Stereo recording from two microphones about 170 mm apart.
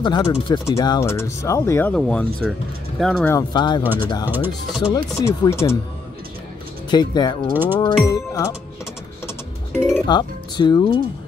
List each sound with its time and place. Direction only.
0.0 s speech: 30° left (ahead or behind); by 3.3 s centre (ahead or behind)
3.3 s speech: 25° left (ahead or behind)
4.3 s speech: 10° right (ahead or behind)
4.9 s speech: 20° left (ahead or behind)
6.9 s speech: 25° left (ahead or behind)
7.5 s speech: 10° right (ahead or behind)
8.0 s speech: 20° left (ahead or behind)
10.0 s speech: 25° left (ahead or behind)